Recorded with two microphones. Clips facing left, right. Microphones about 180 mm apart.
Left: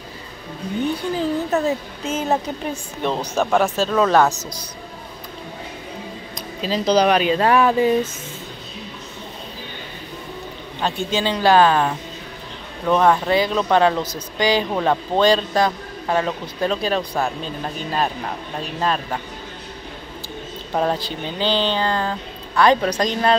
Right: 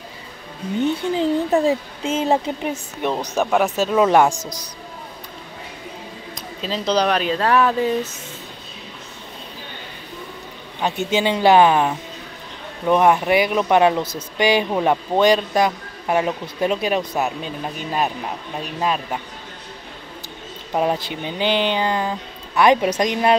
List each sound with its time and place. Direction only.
0.7 s speech: 25° right (ahead or behind)
3.0 s speech: 10° right (ahead or behind)
6.3 s speech: 5° left (ahead or behind)
10.8 s speech: 20° right (ahead or behind)
18.8 s speech: 10° right (ahead or behind)
20.7 s speech: 10° right (ahead or behind)